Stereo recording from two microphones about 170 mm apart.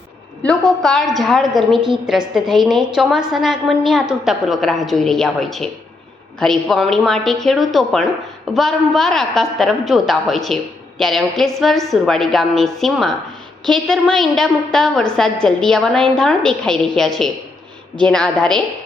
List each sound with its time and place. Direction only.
0.4 s a woman's voice: 5° left (ahead or behind)
1.7 s a woman's voice: 30° right (ahead or behind)
2.0 s a woman's voice: centre (ahead or behind)